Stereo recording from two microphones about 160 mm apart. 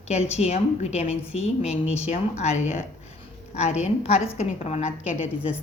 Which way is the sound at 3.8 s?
40° left (ahead or behind).